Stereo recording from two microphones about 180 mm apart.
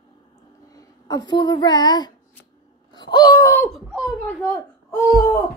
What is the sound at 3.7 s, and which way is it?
Speech, centre (ahead or behind).